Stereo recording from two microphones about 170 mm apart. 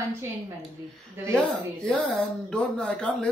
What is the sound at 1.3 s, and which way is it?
Speech, 5° left (ahead or behind).